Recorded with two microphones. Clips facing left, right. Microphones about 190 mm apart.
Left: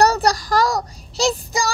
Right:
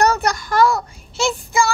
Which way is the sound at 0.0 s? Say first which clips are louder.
Left 1 dB; 35° left (ahead or behind).